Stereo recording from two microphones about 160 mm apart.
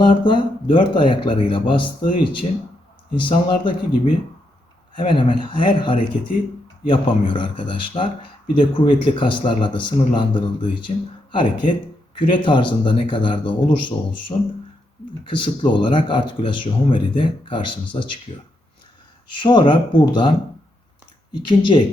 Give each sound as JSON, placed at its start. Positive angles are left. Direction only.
{"t": 0.0, "sound": "speech", "side_deg": 30}
{"t": 19.4, "sound": "speech", "side_deg": 30}
{"t": 21.3, "sound": "speech", "side_deg": 30}